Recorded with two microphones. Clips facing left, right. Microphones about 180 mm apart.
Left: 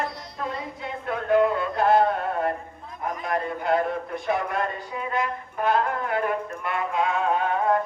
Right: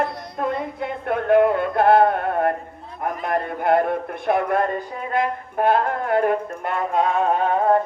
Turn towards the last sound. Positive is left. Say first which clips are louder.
# right 5 dB
turn(degrees=-35)  # may be behind; listen again after turning